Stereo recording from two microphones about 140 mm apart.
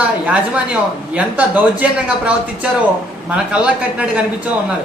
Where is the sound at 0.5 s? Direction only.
10° right (ahead or behind).